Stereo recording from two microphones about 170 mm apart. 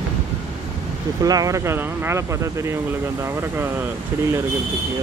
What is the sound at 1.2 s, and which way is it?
Speech, 20° right (ahead or behind).